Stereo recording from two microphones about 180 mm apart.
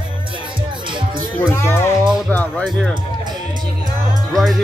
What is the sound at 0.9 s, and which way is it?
Music, 25° right (ahead or behind).